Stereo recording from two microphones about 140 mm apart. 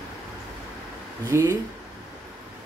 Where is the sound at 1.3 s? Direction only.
20° right (ahead or behind).